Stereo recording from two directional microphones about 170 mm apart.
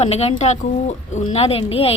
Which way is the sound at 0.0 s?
40° left (ahead or behind).